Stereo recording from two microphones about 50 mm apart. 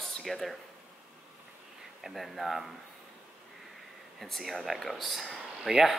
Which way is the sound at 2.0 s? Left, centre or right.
Centre.